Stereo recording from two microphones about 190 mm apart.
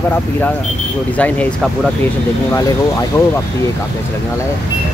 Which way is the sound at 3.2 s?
15° left (ahead or behind).